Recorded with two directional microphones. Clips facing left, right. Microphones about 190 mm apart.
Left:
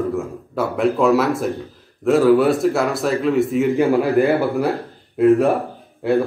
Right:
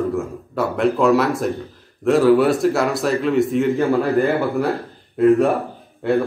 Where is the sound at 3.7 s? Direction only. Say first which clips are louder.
Left 2 dB; 15° left (ahead or behind).